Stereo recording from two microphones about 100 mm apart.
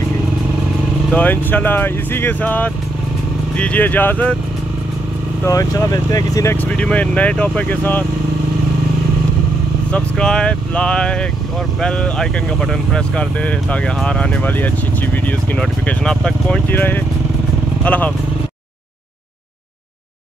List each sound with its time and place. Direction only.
1.1 s speech: 20° left (ahead or behind)
5.4 s speech: 30° left (ahead or behind)
6.5 s speech: 15° left (ahead or behind)
9.8 s speech: 10° left (ahead or behind)
16.7 s speech: 20° left (ahead or behind)